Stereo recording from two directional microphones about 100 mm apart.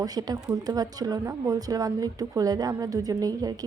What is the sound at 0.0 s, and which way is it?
A woman's voice, 40° right (ahead or behind).